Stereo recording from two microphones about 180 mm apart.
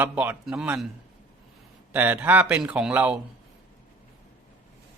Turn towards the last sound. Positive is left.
turn(degrees=-5)  # may be behind; listen again after turning